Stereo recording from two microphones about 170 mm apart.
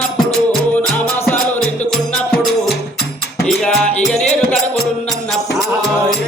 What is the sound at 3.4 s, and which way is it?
Music, 5° left (ahead or behind).